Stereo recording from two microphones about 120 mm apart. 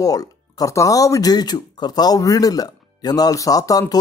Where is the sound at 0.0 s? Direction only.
30° left (ahead or behind).